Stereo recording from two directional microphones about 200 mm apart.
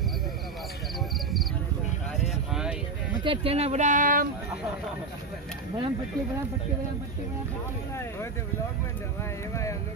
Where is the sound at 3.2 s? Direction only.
25° right (ahead or behind); by 4.3 s 45° right (ahead or behind).